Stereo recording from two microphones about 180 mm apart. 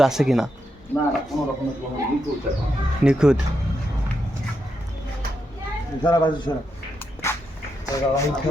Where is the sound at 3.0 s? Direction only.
5° right (ahead or behind).